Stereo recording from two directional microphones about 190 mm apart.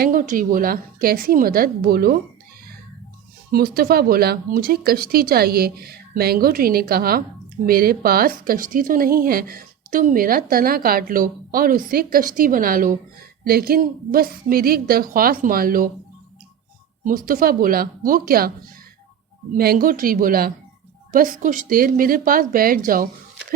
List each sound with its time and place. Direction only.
0.0 s speech: 45° right (ahead or behind)
3.5 s speech: 50° right (ahead or behind)
17.0 s speech: 45° right (ahead or behind)
19.5 s speech: 50° right (ahead or behind)